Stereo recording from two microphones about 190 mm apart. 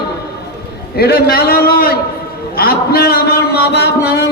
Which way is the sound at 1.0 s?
55° left (ahead or behind).